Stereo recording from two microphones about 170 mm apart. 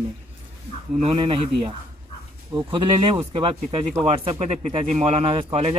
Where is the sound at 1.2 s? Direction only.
30° right (ahead or behind).